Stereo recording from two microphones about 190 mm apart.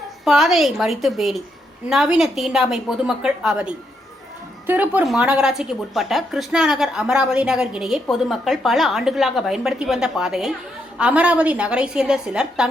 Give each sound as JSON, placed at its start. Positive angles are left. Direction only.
{"t": 0.3, "sound": "speech", "side_deg": 0}